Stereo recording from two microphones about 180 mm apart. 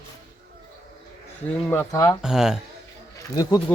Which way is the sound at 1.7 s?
15° left (ahead or behind).